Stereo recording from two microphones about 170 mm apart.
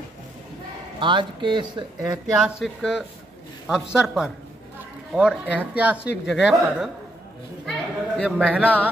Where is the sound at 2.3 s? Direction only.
Centre (ahead or behind).